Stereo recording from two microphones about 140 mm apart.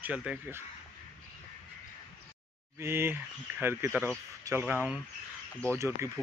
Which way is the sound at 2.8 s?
15° right (ahead or behind).